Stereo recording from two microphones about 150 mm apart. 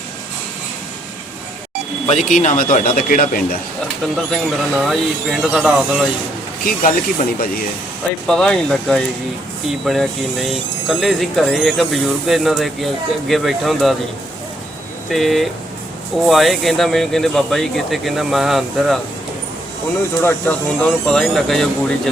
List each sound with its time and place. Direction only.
2.0 s speech: 55° left (ahead or behind)
4.3 s speech: centre (ahead or behind)
6.7 s speech: 65° left (ahead or behind)
8.3 s speech: 5° left (ahead or behind)
15.1 s speech: centre (ahead or behind)
20.2 s speech: 10° left (ahead or behind)